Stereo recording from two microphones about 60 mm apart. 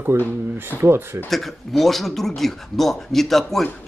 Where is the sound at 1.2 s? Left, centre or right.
Centre.